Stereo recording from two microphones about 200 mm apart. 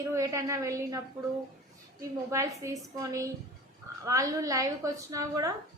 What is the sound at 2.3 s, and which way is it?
A woman's voice, 15° right (ahead or behind).